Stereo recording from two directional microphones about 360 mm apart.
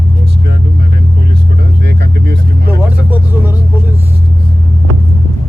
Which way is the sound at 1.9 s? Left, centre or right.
Right.